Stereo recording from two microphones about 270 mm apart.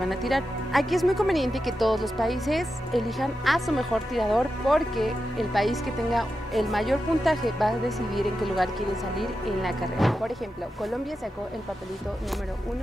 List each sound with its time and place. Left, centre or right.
0.1 s speech: centre